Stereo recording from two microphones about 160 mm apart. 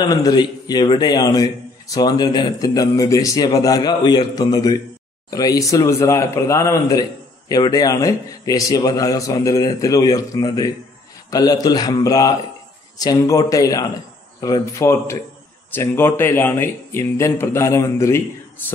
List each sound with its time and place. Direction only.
0.1 s speech: 25° left (ahead or behind)